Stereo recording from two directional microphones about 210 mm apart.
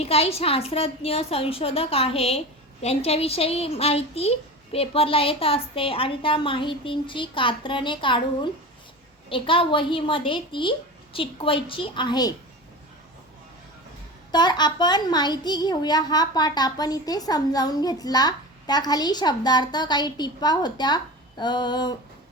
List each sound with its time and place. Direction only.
0.0 s a child's voice: 30° left (ahead or behind)
14.3 s a child's voice: 20° left (ahead or behind)